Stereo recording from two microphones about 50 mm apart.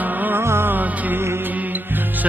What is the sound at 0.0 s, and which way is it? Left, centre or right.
Music, right.